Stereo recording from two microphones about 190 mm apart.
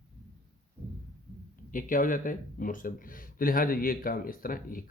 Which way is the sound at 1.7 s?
45° left (ahead or behind).